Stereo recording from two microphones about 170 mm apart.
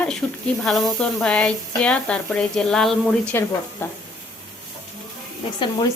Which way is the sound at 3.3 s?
15° left (ahead or behind).